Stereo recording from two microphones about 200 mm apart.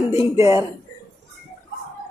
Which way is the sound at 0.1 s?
15° right (ahead or behind).